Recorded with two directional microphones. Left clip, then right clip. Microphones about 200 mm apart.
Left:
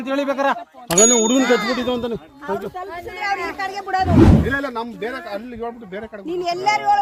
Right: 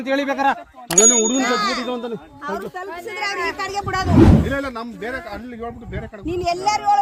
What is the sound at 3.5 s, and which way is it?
Speech, 60° right (ahead or behind).